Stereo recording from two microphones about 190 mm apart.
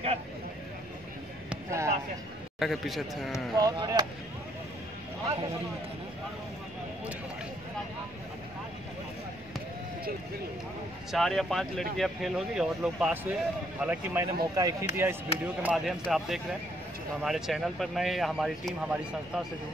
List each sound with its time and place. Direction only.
1.5 s basketball bounce: 15° right (ahead or behind)
2.6 s speech: centre (ahead or behind)
3.5 s speech: 20° right (ahead or behind)
11.1 s speech: centre (ahead or behind); by 15.1 s 15° right (ahead or behind)
15.6 s speech: centre (ahead or behind)